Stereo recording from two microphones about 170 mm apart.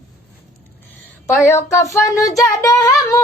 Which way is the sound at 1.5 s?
20° left (ahead or behind).